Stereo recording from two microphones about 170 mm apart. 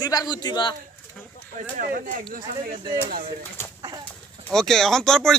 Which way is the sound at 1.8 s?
50° right (ahead or behind).